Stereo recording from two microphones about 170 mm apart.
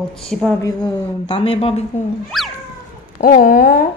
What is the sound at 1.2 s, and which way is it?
Speech, 30° left (ahead or behind).